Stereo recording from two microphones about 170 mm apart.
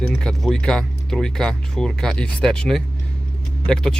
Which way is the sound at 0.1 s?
5° left (ahead or behind).